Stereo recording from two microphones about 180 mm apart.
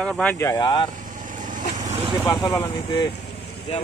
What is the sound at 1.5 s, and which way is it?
Vehicle, 45° right (ahead or behind).